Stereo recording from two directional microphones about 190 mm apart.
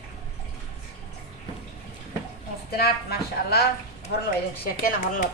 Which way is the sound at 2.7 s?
55° left (ahead or behind).